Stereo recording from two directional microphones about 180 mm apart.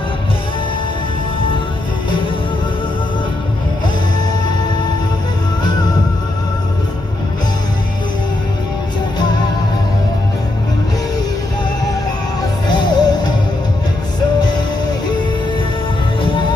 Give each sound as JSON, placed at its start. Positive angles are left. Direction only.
{"t": 12.6, "sound": "music", "side_deg": 25}
{"t": 14.4, "sound": "music", "side_deg": 25}
{"t": 16.2, "sound": "music", "side_deg": 30}